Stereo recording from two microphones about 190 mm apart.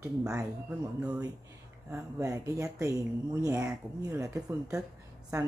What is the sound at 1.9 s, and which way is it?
Speech, 15° right (ahead or behind).